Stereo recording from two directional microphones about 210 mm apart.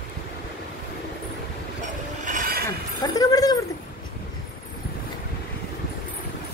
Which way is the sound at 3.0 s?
15° left (ahead or behind).